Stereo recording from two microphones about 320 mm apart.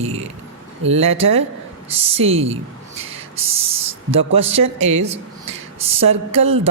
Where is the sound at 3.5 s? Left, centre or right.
Centre.